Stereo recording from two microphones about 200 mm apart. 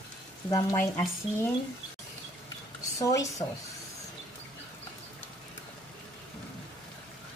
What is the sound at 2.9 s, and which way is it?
Speech, 15° left (ahead or behind).